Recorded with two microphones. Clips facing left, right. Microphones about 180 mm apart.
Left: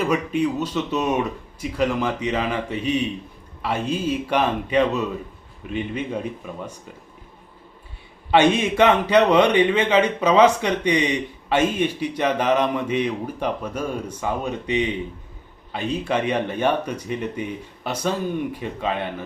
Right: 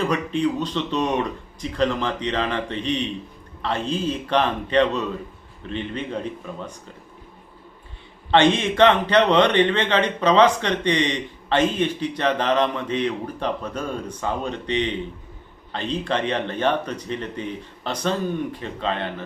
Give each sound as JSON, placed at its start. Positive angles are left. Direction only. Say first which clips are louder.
{"t": 0.0, "sound": "speech", "louder": "left 1 dB", "side_deg": 10}
{"t": 8.3, "sound": "speech", "louder": "left 1 dB", "side_deg": 10}